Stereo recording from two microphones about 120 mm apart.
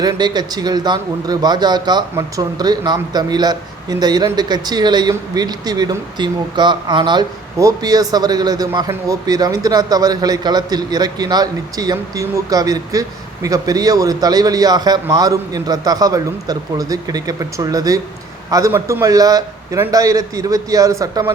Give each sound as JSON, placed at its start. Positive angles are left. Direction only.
{"t": 0.0, "sound": "a man's voice", "side_deg": -35}